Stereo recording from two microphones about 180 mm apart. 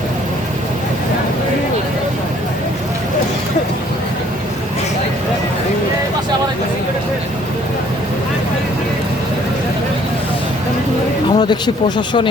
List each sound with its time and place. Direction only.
11.3 s speech: 25° left (ahead or behind)